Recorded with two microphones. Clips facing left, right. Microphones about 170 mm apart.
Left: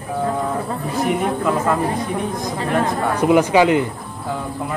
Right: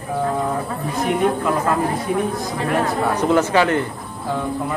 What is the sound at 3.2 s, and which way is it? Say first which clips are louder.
Speech: left 4 dB; 10° left (ahead or behind).